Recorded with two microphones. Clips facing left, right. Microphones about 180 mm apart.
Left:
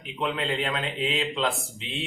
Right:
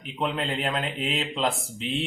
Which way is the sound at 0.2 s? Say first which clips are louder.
Even; 40° right (ahead or behind).